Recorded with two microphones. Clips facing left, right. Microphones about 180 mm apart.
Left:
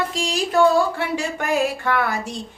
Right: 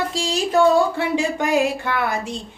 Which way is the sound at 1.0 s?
15° right (ahead or behind).